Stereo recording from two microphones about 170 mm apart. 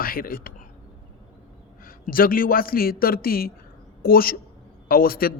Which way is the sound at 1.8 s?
60° left (ahead or behind).